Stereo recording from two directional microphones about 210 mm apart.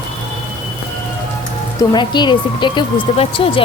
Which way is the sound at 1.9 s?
20° left (ahead or behind).